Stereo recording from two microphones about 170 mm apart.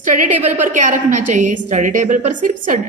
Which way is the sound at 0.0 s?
50° right (ahead or behind).